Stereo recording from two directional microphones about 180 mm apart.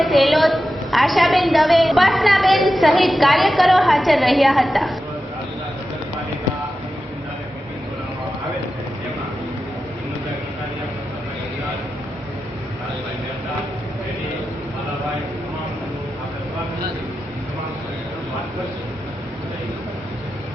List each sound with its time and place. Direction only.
0.0 s a woman's voice: centre (ahead or behind)